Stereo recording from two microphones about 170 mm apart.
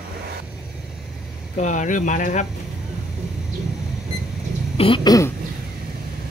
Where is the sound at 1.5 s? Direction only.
45° left (ahead or behind).